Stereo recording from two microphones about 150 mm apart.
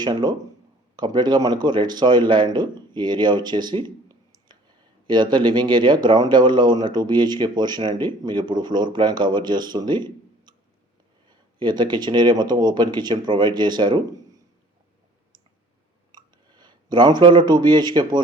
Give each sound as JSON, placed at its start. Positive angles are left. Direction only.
{"t": 0.0, "sound": "speech", "side_deg": -30}
{"t": 16.1, "sound": "speech", "side_deg": -30}